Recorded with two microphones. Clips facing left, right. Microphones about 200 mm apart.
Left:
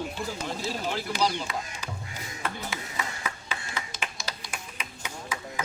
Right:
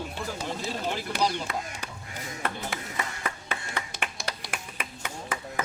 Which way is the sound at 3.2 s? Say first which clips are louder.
Right 2 dB; 60° right (ahead or behind).